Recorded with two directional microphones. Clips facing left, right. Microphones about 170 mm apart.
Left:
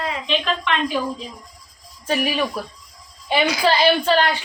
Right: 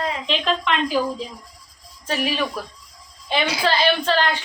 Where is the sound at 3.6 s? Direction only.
10° left (ahead or behind).